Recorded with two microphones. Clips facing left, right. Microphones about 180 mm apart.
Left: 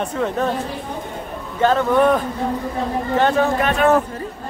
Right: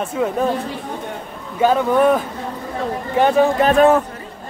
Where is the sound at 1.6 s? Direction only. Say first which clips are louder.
Right 1 dB; 10° right (ahead or behind).